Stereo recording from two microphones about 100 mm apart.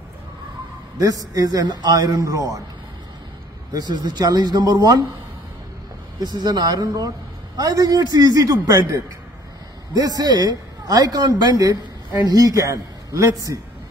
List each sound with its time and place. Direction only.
0.9 s a man's voice: 35° right (ahead or behind)
3.7 s speech: 45° right (ahead or behind)
6.1 s a man's voice: 45° right (ahead or behind)
9.9 s a man's voice: 40° right (ahead or behind)